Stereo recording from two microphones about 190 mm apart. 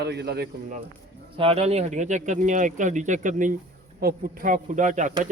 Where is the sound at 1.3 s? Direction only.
30° right (ahead or behind).